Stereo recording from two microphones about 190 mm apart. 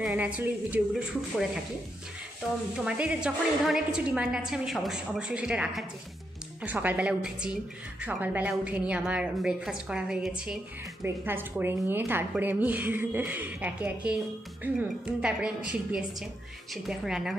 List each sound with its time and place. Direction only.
0.0 s a woman's voice: 5° right (ahead or behind)
2.7 s a woman's voice: 5° right (ahead or behind)